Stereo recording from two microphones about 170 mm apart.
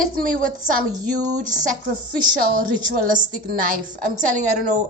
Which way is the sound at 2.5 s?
55° right (ahead or behind).